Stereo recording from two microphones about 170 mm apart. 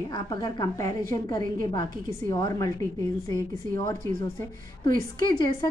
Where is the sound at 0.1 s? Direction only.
25° left (ahead or behind).